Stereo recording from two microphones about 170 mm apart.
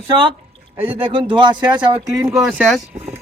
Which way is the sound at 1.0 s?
30° right (ahead or behind).